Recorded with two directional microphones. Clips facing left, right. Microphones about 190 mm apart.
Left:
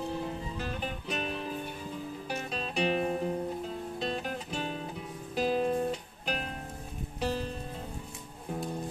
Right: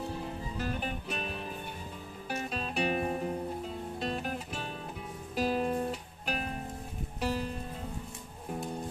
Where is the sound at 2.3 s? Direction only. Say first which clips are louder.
Right 3 dB; 5° right (ahead or behind).